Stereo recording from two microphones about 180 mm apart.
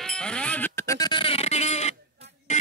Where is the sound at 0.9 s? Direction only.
25° left (ahead or behind).